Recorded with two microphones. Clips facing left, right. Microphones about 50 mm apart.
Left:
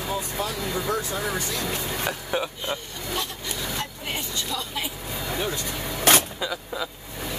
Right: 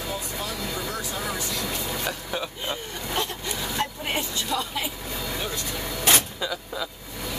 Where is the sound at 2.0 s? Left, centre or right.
Centre.